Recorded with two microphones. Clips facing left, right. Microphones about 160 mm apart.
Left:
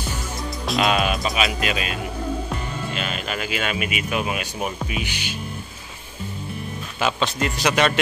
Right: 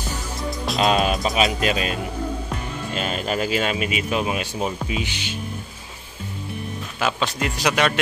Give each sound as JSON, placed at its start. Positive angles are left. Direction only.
{"t": 0.7, "sound": "speech", "side_deg": -30}
{"t": 3.0, "sound": "speech", "side_deg": -35}
{"t": 7.0, "sound": "a man's voice", "side_deg": -5}